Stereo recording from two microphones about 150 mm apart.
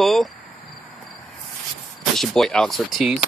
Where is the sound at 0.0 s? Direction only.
Centre (ahead or behind).